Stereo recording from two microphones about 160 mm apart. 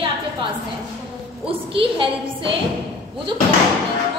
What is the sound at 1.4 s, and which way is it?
A woman's voice, 35° right (ahead or behind).